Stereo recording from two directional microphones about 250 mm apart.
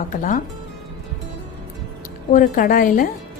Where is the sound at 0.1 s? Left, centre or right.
Left.